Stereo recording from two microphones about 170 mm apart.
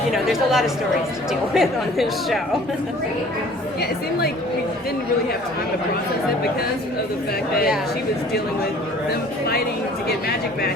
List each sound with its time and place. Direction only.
0.1 s speech: centre (ahead or behind)
10.1 s speech: 65° left (ahead or behind)